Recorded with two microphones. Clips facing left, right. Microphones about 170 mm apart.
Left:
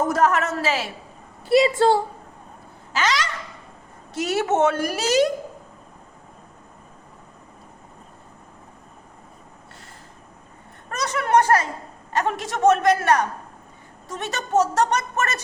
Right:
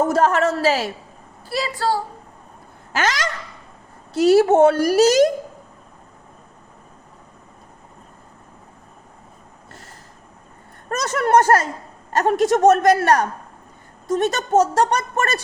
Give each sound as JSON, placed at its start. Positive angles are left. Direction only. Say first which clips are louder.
{"t": 0.0, "sound": "a woman's voice", "louder": "right 3 dB", "side_deg": -30}
{"t": 1.5, "sound": "a woman's voice", "louder": "left 6 dB", "side_deg": 20}
{"t": 2.9, "sound": "a woman's voice", "louder": "right 1 dB", "side_deg": -50}
{"t": 4.1, "sound": "a woman's voice", "louder": "right 9 dB", "side_deg": -35}
{"t": 10.8, "sound": "a woman's voice", "louder": "right 5 dB", "side_deg": -45}